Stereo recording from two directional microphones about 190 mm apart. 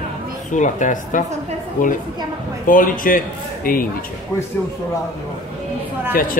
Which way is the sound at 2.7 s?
45° left (ahead or behind).